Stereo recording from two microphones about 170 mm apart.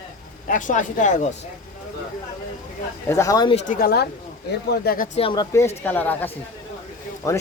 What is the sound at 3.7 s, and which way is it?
A woman's voice, 65° left (ahead or behind).